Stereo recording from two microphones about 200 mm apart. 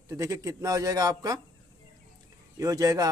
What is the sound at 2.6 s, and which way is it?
Speech, 15° right (ahead or behind).